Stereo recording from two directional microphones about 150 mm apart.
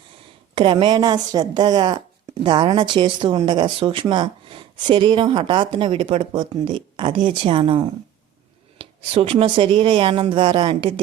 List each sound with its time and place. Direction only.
0.5 s a woman's voice: 35° right (ahead or behind)
8.8 s speech: 40° right (ahead or behind)